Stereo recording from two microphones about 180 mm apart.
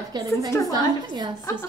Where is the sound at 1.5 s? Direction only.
15° left (ahead or behind).